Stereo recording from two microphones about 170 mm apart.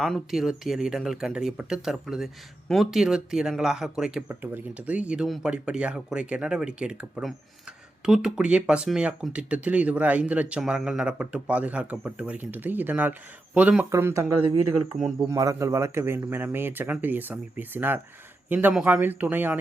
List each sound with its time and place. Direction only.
0.0 s speech: centre (ahead or behind); by 14.3 s 15° right (ahead or behind)
14.4 s speech: 30° right (ahead or behind)
15.3 s speech: 20° right (ahead or behind)